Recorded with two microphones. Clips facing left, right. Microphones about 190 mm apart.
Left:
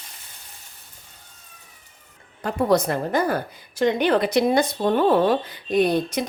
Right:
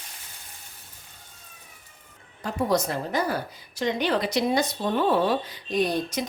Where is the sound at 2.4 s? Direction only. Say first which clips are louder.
Left 5 dB; 60° left (ahead or behind).